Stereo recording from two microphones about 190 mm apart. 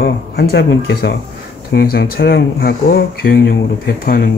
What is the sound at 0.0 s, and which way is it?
Speech, 55° left (ahead or behind).